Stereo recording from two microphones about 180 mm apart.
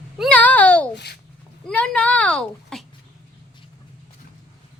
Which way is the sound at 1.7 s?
5° left (ahead or behind).